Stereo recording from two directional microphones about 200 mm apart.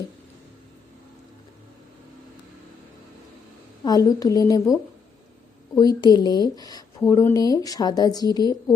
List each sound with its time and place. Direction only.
3.8 s a woman's voice: 20° left (ahead or behind)
5.7 s speech: 20° left (ahead or behind)